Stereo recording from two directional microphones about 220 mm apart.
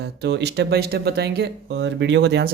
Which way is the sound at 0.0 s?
50° right (ahead or behind).